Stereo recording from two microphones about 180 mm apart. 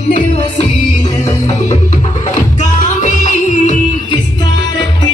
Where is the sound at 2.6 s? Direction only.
45° left (ahead or behind).